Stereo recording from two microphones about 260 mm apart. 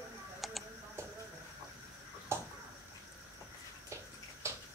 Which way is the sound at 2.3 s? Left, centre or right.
Centre.